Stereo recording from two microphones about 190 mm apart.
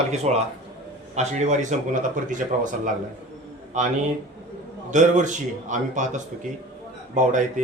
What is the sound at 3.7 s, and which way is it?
Speech, 40° right (ahead or behind).